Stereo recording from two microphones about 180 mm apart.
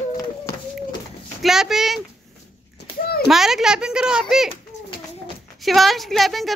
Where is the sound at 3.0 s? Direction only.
60° left (ahead or behind).